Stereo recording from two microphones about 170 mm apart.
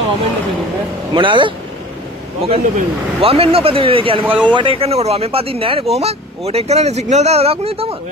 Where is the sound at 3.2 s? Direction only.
35° right (ahead or behind).